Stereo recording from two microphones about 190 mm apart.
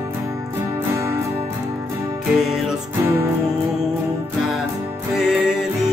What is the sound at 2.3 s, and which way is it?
Speech, centre (ahead or behind).